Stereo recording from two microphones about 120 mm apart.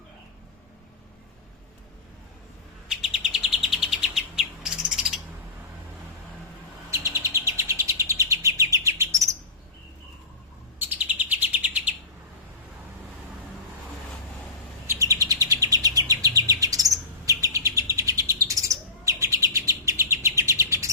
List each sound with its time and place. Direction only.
2.9 s bird vocalization: 5° right (ahead or behind)
6.9 s bird: 25° right (ahead or behind)
10.8 s chirp: 15° right (ahead or behind)
14.8 s chirp: 30° right (ahead or behind)